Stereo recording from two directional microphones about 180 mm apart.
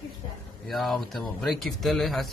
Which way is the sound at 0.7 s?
Centre (ahead or behind).